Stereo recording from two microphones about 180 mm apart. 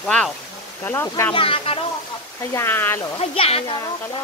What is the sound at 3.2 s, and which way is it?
Speech, 35° left (ahead or behind).